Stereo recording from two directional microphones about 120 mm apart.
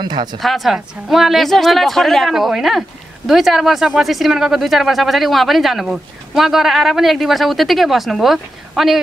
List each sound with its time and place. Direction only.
0.0 s speech: 35° right (ahead or behind)
0.4 s speech: centre (ahead or behind)